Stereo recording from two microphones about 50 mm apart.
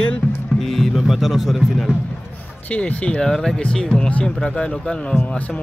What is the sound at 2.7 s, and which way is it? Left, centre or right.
Speech, left.